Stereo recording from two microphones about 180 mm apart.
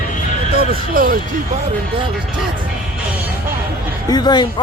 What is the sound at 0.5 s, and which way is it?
Speech, 55° right (ahead or behind).